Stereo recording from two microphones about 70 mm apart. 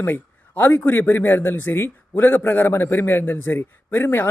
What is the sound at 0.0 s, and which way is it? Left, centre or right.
Speech, left.